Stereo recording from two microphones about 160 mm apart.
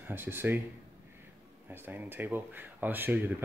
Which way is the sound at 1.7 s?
10° right (ahead or behind).